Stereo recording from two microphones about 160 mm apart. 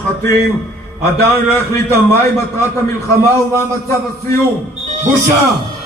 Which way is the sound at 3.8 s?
15° left (ahead or behind).